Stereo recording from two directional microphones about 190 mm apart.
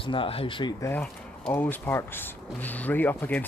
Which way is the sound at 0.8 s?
5° left (ahead or behind).